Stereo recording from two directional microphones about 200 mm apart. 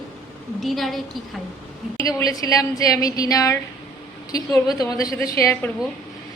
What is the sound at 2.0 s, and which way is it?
A woman's voice, 15° left (ahead or behind).